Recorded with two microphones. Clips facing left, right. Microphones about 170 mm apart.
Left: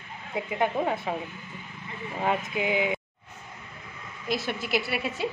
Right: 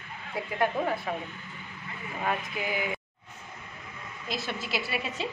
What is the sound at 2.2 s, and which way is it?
Speech, 20° left (ahead or behind).